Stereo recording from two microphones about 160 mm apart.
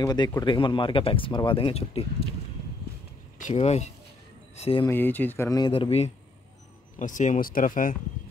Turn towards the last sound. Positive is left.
turn(degrees=60)  # may be behind; listen again after turning